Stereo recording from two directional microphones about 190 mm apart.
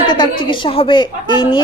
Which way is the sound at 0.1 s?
25° left (ahead or behind).